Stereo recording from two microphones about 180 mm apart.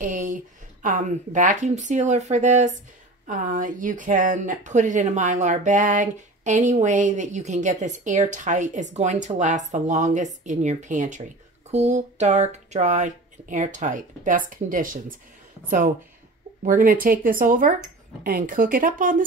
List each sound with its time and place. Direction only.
0.0 s a sound: 45° right (ahead or behind)
0.8 s speech: 45° right (ahead or behind)
16.6 s speech: 50° right (ahead or behind)